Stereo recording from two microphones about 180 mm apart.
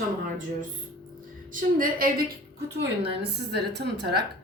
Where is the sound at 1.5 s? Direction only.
50° right (ahead or behind).